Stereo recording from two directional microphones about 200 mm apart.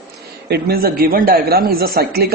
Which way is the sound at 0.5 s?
50° right (ahead or behind).